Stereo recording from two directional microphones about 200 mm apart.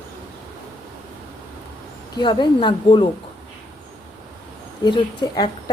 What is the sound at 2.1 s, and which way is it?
Speech, 20° left (ahead or behind).